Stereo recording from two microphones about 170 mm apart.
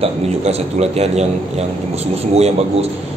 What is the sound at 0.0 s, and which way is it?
A man's voice, 35° right (ahead or behind).